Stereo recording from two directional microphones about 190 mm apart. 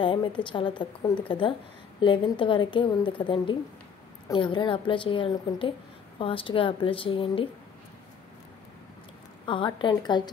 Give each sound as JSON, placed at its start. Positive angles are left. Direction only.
{"t": 0.0, "sound": "a woman's voice", "side_deg": 25}
{"t": 9.5, "sound": "speech", "side_deg": 25}